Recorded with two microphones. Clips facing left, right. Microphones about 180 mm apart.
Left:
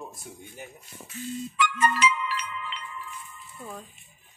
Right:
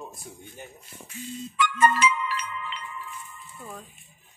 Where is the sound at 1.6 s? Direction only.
50° right (ahead or behind).